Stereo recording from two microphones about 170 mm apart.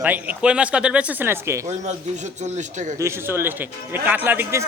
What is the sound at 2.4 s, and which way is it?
Speech, 45° right (ahead or behind).